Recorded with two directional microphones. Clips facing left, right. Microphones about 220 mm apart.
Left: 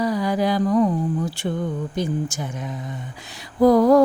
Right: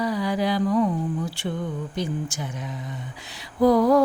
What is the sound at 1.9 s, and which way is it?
Humming, 45° left (ahead or behind).